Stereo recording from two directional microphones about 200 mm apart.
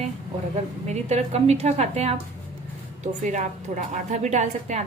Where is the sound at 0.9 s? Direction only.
35° right (ahead or behind).